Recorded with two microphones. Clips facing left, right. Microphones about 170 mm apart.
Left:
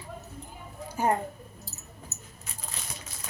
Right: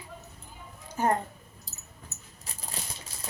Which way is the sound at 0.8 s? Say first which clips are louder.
Even; 10° left (ahead or behind).